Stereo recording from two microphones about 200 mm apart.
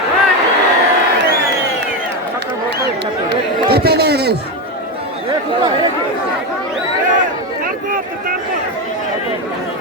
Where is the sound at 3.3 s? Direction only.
55° right (ahead or behind).